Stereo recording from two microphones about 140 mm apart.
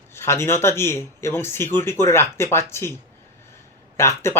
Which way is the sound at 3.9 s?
20° left (ahead or behind).